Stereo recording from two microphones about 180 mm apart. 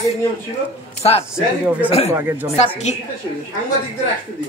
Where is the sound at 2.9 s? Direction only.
40° left (ahead or behind).